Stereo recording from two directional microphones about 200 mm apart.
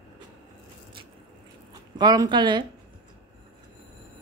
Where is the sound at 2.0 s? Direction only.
20° right (ahead or behind).